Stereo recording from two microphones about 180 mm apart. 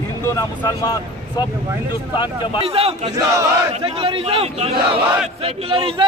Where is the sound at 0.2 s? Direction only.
15° left (ahead or behind).